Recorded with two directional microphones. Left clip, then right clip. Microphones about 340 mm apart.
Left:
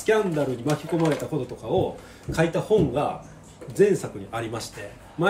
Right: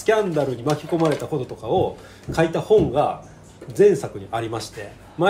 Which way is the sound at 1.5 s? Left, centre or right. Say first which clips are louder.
Right 4 dB; centre.